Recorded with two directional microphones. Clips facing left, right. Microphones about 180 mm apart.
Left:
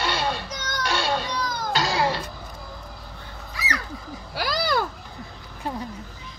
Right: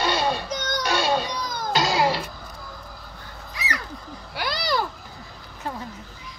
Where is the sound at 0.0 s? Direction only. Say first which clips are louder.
Right 3 dB; 15° right (ahead or behind).